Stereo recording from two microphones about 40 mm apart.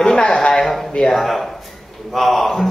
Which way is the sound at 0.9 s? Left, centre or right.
Centre.